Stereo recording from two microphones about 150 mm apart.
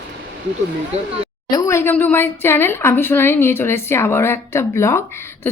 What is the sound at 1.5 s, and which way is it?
Speech, 20° left (ahead or behind).